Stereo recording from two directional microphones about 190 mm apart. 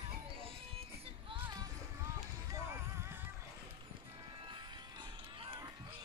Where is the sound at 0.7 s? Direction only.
30° right (ahead or behind).